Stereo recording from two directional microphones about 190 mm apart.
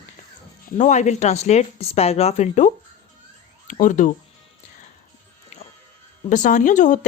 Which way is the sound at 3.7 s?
45° left (ahead or behind).